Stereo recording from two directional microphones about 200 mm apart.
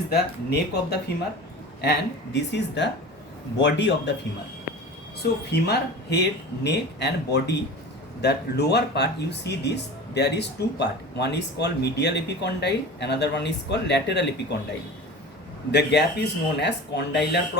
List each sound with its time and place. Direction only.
0.1 s speech: 55° left (ahead or behind)
5.2 s speech: 55° left (ahead or behind)
15.7 s speech: 55° left (ahead or behind)